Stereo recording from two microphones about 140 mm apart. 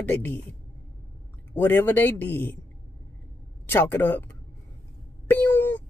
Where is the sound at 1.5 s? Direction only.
15° left (ahead or behind).